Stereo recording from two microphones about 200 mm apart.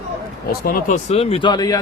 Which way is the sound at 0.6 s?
35° left (ahead or behind).